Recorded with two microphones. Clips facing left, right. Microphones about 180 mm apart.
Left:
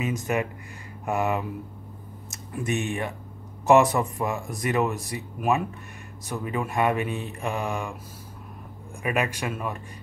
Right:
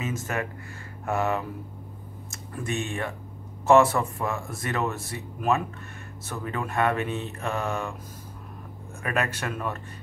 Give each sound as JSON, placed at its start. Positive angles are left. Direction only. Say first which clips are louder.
{"t": 0.0, "sound": "speech", "louder": "left 4 dB", "side_deg": 15}
{"t": 9.0, "sound": "speech", "louder": "left 2 dB", "side_deg": 10}